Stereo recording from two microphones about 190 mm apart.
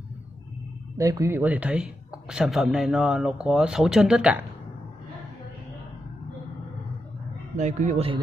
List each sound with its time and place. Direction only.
0.9 s a woman's voice: 15° right (ahead or behind)
7.5 s speech: 40° right (ahead or behind)